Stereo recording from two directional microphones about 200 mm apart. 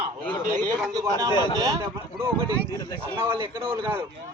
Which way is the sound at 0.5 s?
20° right (ahead or behind).